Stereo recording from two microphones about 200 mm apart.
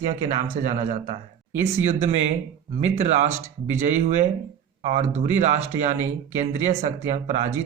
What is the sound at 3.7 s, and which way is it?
A man's voice, 40° right (ahead or behind).